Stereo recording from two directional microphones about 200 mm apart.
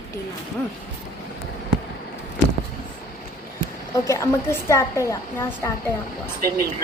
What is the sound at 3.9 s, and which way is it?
A woman's voice, 15° left (ahead or behind).